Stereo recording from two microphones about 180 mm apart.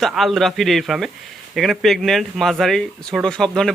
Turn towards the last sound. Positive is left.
turn(degrees=5)  # may be behind; listen again after turning